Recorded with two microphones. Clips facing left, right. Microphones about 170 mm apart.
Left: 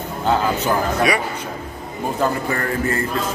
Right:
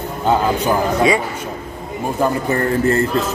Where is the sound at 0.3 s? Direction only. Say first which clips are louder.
Right 3 dB; 20° right (ahead or behind).